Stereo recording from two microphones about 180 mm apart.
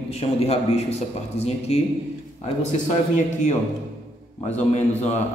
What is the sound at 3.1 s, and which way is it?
A man's voice, 40° left (ahead or behind).